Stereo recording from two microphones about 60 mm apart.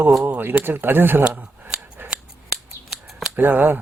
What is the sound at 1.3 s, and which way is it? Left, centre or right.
Scissors, right.